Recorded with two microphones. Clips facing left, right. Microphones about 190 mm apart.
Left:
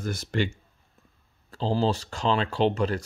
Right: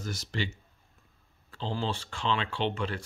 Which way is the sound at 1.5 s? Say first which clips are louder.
Left 8 dB; 40° left (ahead or behind).